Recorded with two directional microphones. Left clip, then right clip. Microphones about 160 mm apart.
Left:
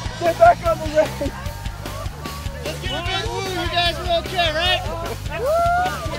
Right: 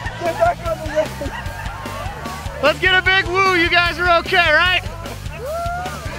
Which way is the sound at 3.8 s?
75° right (ahead or behind).